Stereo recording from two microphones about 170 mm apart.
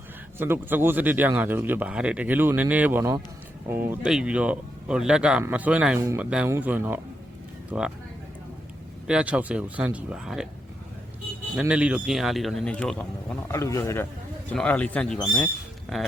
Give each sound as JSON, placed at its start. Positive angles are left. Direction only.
{"t": 0.3, "sound": "a man's voice", "side_deg": -15}
{"t": 9.0, "sound": "a man's voice", "side_deg": -5}
{"t": 11.5, "sound": "a man's voice", "side_deg": -5}
{"t": 13.5, "sound": "a man's voice", "side_deg": 20}